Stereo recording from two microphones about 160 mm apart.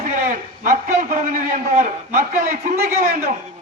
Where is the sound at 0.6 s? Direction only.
60° right (ahead or behind).